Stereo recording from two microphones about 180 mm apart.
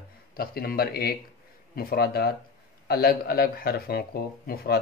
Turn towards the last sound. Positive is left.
turn(degrees=60)  # may be behind; listen again after turning